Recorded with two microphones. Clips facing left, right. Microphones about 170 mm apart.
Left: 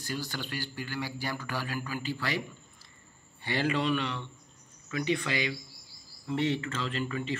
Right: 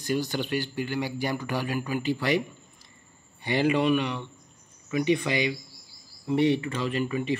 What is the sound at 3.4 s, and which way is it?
Speech, 15° right (ahead or behind).